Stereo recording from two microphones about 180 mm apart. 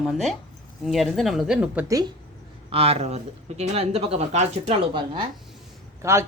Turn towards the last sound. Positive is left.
turn(degrees=-15)  # may be behind; listen again after turning